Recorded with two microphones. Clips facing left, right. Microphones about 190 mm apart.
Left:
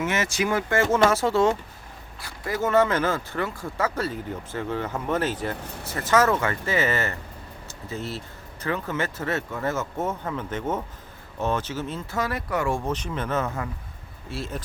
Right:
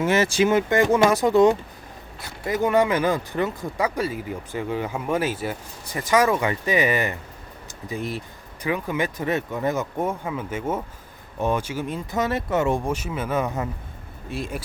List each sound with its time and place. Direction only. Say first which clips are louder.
0.0 s speech: right 6 dB; 35° right (ahead or behind); by 14.6 s 15° right (ahead or behind)